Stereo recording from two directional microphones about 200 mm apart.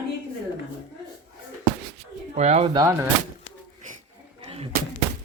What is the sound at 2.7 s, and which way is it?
Speech, 20° right (ahead or behind).